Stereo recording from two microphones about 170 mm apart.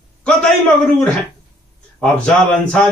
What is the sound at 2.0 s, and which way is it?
Speech, 5° left (ahead or behind).